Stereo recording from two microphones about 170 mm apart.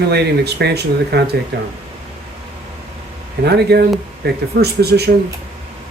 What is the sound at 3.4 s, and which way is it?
Speech, 75° right (ahead or behind).